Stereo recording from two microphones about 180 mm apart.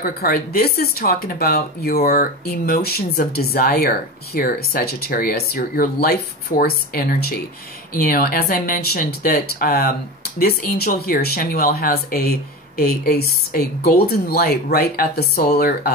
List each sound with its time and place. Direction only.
0.0 s speech: 55° left (ahead or behind)